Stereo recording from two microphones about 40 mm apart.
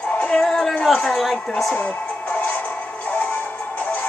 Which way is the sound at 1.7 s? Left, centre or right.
Left.